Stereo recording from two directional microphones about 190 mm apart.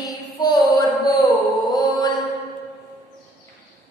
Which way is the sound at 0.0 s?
20° left (ahead or behind).